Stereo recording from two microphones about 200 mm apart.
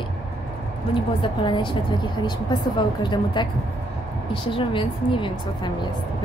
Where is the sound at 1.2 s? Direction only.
25° left (ahead or behind).